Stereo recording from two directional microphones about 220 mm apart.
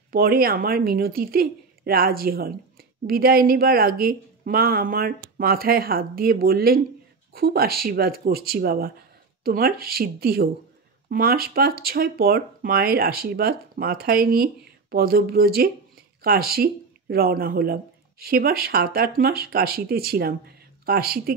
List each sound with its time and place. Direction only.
0.1 s speech: 45° right (ahead or behind)